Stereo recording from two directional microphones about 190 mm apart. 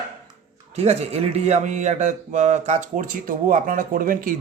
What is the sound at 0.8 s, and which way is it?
Speech, 35° right (ahead or behind).